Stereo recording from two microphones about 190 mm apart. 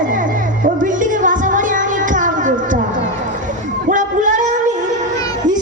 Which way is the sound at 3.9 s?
40° right (ahead or behind).